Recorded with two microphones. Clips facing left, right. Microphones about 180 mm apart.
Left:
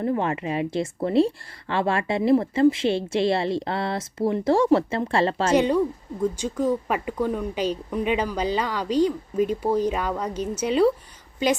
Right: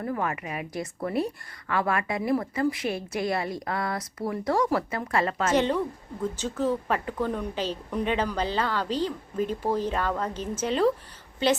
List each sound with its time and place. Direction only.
0.0 s a woman's voice: 25° left (ahead or behind)
6.3 s speech: 10° left (ahead or behind)